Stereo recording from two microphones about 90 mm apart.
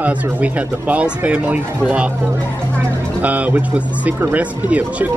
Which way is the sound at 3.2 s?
15° right (ahead or behind).